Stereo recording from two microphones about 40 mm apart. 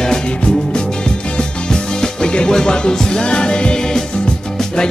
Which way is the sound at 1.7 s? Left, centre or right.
Centre.